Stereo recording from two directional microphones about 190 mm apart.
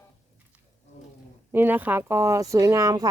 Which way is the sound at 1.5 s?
10° right (ahead or behind).